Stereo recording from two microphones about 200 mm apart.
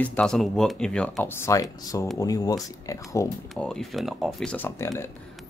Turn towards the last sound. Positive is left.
turn(degrees=15)  # may be behind; listen again after turning